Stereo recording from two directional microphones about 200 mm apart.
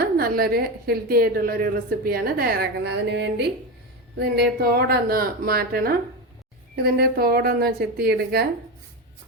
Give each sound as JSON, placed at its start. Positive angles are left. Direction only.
{"t": 0.0, "sound": "a woman's voice", "side_deg": -50}